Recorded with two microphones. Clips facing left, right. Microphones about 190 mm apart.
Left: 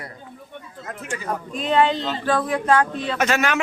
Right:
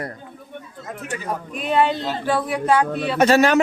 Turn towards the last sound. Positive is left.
turn(degrees=-35)  # may be behind; listen again after turning